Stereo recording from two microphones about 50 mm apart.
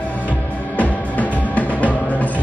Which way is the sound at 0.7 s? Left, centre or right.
Left.